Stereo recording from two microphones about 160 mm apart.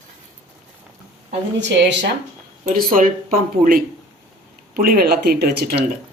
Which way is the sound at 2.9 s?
60° right (ahead or behind).